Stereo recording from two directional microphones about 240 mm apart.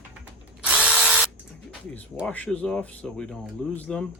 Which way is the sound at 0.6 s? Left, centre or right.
Centre.